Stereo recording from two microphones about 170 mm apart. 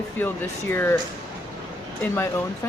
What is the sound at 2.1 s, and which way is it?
Speech, 15° left (ahead or behind).